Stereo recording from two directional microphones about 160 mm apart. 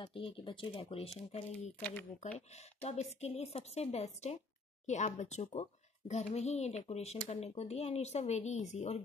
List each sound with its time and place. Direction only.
0.0 s speech: 35° left (ahead or behind)
1.8 s speech: 10° left (ahead or behind)
2.3 s a child's voice: 40° left (ahead or behind)